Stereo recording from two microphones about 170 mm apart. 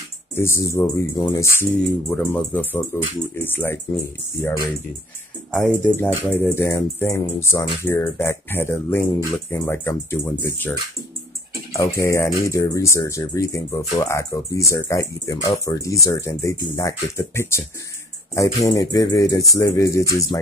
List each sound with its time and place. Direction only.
0.4 s speech: 15° left (ahead or behind)
1.8 s speech: 5° left (ahead or behind)
6.3 s speech: 15° left (ahead or behind)
11.7 s speech: 20° left (ahead or behind)